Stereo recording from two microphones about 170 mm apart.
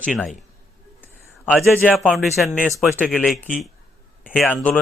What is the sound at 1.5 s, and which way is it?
A man's voice, centre (ahead or behind).